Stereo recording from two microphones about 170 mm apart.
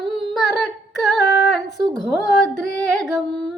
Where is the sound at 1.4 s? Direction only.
Centre (ahead or behind).